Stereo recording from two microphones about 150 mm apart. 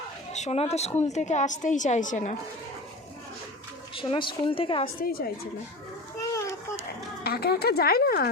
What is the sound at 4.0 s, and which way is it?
Speech, 35° left (ahead or behind).